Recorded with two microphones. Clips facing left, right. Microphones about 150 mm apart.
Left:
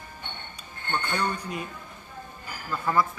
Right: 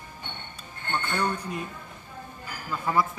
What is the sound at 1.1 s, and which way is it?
Speech, 10° right (ahead or behind).